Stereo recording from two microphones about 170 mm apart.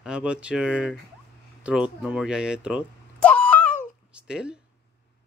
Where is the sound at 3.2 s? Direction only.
5° left (ahead or behind).